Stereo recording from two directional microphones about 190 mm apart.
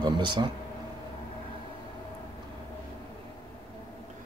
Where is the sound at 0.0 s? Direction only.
25° right (ahead or behind).